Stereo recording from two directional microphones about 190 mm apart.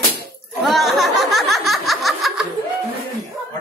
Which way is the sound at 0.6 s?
Centre (ahead or behind).